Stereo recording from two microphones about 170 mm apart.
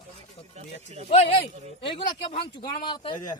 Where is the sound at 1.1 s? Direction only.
40° left (ahead or behind).